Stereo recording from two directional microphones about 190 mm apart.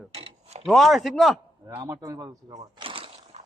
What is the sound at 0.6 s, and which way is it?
Speech, centre (ahead or behind).